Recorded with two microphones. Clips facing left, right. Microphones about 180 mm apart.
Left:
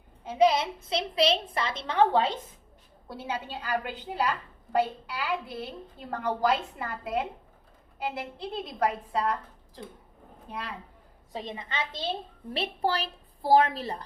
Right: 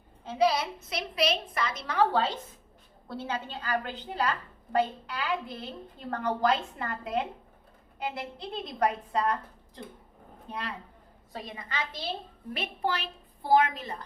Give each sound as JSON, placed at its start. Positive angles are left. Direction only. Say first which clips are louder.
{"t": 0.3, "sound": "a woman's voice", "louder": "left 3 dB", "side_deg": 20}
{"t": 3.1, "sound": "a woman's voice", "louder": "even", "side_deg": 10}
{"t": 11.3, "sound": "a woman's voice", "louder": "left 3 dB", "side_deg": 15}
{"t": 12.5, "sound": "a woman's voice", "louder": "left 3 dB", "side_deg": 35}